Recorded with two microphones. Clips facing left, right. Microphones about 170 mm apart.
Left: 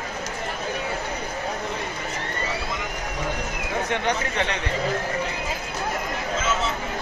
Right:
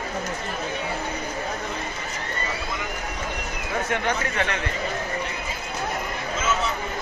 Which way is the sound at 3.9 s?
20° left (ahead or behind).